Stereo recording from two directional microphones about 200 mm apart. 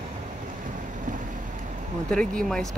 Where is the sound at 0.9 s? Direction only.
40° right (ahead or behind).